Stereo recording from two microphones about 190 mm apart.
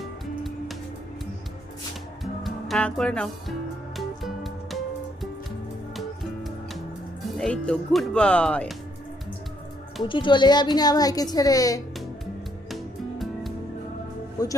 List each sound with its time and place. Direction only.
2.4 s speech: centre (ahead or behind)
3.9 s music: centre (ahead or behind)
6.0 s music: centre (ahead or behind)
7.3 s speech: 5° left (ahead or behind)
10.1 s a woman's voice: 25° left (ahead or behind)
12.7 s music: centre (ahead or behind)